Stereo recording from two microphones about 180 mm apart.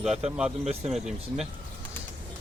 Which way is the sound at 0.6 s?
35° right (ahead or behind).